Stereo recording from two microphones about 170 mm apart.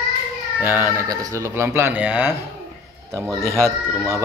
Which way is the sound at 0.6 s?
10° right (ahead or behind).